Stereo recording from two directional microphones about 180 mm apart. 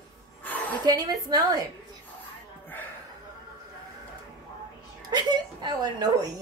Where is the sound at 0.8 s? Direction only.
20° right (ahead or behind).